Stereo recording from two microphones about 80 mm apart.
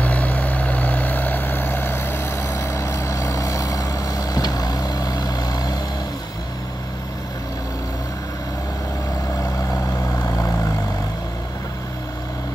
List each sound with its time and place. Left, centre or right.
0.0 s vehicle: centre; by 5.8 s left
10.2 s vehicle: left